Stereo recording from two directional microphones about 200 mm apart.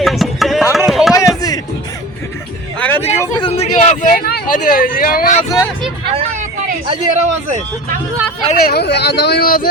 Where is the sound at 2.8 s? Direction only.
10° left (ahead or behind).